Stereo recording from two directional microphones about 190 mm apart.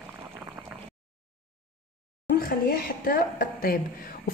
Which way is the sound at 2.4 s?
50° left (ahead or behind).